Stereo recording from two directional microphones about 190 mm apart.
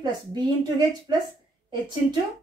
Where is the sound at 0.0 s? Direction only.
20° right (ahead or behind).